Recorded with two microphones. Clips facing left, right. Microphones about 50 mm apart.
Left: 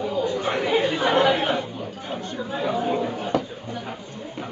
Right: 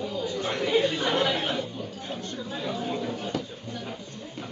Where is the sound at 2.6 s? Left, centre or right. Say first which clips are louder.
Left 7 dB; left.